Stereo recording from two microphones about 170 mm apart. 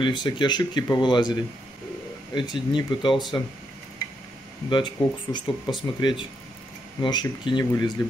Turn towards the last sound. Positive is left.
turn(degrees=25)  # may be behind; listen again after turning